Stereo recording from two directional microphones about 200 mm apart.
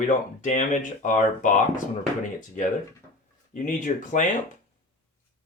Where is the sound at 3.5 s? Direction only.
40° left (ahead or behind).